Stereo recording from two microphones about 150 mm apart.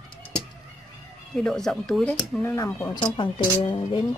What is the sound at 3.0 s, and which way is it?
Speech, 35° left (ahead or behind).